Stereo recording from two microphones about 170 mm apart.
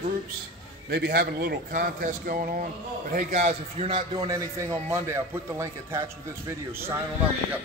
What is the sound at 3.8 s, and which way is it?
A man's voice, 30° right (ahead or behind).